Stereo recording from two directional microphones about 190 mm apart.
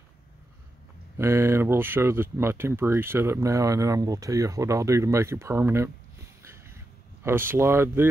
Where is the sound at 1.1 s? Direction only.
15° right (ahead or behind).